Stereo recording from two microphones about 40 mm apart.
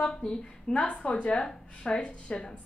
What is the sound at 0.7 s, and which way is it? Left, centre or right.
A woman's voice, left.